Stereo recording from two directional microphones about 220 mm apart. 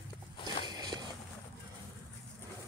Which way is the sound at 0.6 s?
20° right (ahead or behind).